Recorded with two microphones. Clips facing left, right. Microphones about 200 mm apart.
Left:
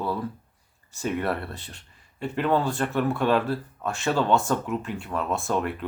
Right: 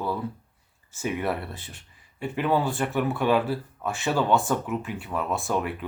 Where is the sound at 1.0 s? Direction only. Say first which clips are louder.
Left 1 dB; 5° right (ahead or behind).